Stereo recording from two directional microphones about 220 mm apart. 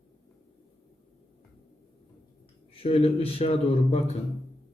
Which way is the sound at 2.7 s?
25° left (ahead or behind).